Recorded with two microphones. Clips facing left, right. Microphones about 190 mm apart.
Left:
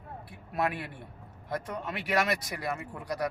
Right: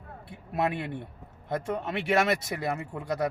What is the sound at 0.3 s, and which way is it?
A man's voice, 25° right (ahead or behind).